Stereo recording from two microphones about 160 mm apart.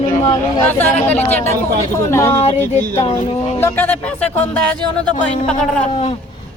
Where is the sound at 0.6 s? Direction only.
10° left (ahead or behind).